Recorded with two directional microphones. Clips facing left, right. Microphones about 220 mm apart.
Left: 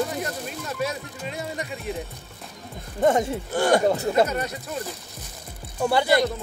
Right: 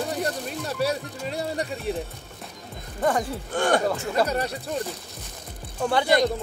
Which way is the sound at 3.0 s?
25° left (ahead or behind).